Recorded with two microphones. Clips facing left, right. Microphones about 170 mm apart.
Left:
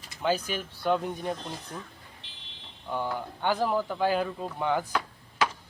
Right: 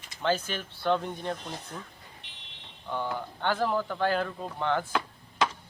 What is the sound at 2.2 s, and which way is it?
Fire alarm, 30° left (ahead or behind).